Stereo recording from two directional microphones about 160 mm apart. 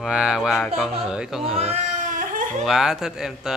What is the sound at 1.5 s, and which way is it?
Baby cry, 40° right (ahead or behind).